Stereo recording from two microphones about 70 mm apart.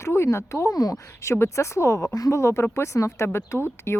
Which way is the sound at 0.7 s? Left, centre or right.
Left.